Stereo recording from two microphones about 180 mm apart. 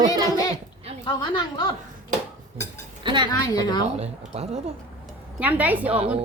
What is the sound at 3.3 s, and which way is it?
Speech, 20° left (ahead or behind).